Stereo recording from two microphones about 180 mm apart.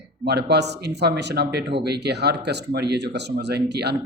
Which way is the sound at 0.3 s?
65° right (ahead or behind).